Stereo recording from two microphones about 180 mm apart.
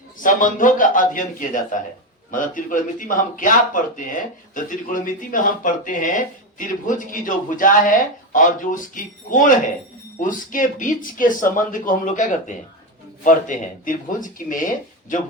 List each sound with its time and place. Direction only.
0.2 s speech: 45° left (ahead or behind)